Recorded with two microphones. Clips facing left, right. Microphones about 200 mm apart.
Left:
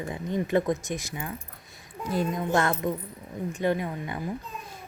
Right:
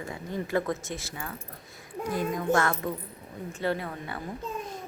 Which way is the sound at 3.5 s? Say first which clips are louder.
Left 3 dB; 15° left (ahead or behind).